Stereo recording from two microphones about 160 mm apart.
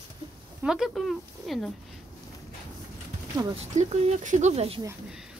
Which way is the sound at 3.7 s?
45° right (ahead or behind).